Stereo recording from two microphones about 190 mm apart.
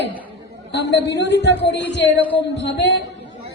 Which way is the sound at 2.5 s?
65° left (ahead or behind).